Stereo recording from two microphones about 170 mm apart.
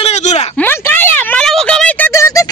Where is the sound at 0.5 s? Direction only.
10° left (ahead or behind).